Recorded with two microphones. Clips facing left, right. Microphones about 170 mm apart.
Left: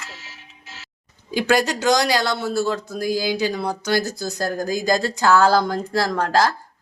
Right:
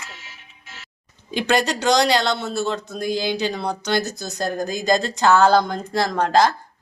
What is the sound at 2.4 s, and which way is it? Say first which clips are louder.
Speech: left 2 dB; 25° right (ahead or behind).